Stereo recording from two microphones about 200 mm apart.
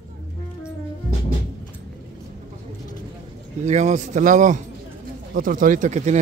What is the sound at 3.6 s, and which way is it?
Speech, 35° right (ahead or behind).